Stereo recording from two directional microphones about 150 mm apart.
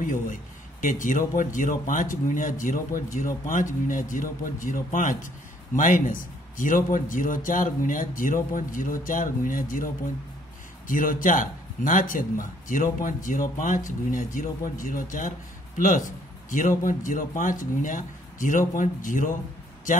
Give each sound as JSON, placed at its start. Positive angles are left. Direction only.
{"t": 0.0, "sound": "a man's voice", "side_deg": 60}
{"t": 10.9, "sound": "a man's voice", "side_deg": 65}